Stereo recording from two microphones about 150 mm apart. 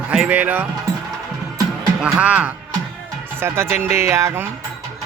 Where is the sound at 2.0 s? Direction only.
5° right (ahead or behind).